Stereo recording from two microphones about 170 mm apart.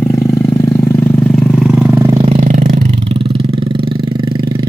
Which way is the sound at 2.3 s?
50° right (ahead or behind).